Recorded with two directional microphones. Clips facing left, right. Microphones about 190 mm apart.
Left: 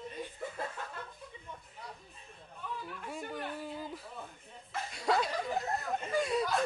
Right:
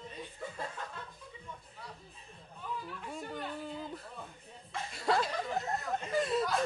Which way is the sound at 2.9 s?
5° left (ahead or behind).